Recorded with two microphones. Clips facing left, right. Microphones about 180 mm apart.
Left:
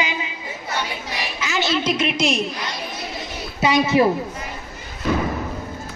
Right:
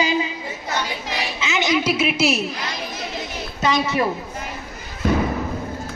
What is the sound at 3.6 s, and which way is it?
Speech, 10° left (ahead or behind).